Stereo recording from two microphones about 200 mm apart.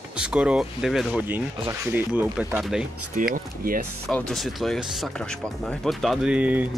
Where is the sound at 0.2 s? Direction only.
5° right (ahead or behind).